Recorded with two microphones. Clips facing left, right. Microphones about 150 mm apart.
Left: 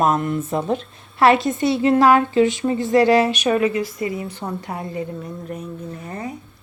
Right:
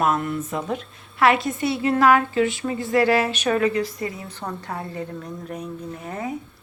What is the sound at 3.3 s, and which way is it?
A woman's voice, 15° left (ahead or behind).